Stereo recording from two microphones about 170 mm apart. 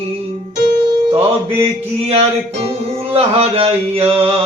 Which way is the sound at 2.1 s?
35° right (ahead or behind).